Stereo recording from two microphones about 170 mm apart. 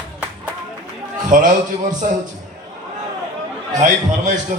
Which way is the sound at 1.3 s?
50° right (ahead or behind).